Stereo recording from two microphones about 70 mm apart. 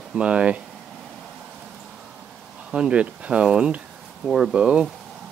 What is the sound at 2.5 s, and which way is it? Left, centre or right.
Speech, centre.